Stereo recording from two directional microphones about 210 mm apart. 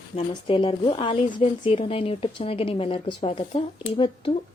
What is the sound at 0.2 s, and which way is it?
A woman's voice, 25° left (ahead or behind).